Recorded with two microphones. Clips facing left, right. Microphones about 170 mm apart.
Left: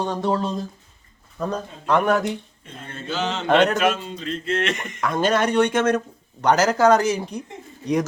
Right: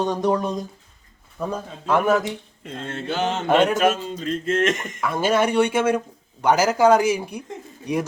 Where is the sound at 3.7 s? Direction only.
45° right (ahead or behind).